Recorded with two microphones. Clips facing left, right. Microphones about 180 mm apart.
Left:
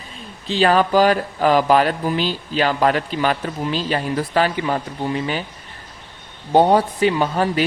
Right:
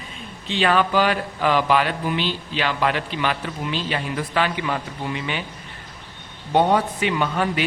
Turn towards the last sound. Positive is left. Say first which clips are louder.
# left 3 dB
turn(degrees=35)  # may be behind; listen again after turning